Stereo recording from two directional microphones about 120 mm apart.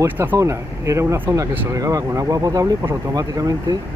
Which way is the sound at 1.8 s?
30° right (ahead or behind).